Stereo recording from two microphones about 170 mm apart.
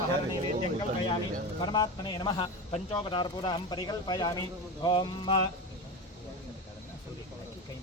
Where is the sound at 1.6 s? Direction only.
25° left (ahead or behind).